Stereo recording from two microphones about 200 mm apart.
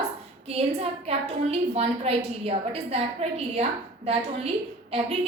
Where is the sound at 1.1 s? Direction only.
30° right (ahead or behind).